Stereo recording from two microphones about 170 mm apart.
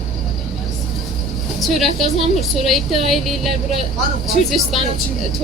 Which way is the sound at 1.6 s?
Centre (ahead or behind).